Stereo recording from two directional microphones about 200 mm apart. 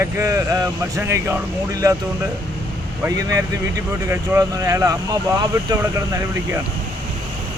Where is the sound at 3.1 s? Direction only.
15° right (ahead or behind).